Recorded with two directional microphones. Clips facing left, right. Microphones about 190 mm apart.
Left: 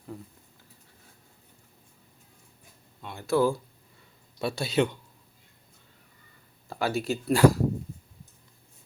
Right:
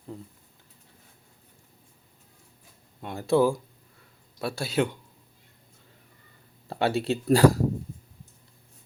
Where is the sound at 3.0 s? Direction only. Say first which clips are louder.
Right 6 dB; 45° right (ahead or behind).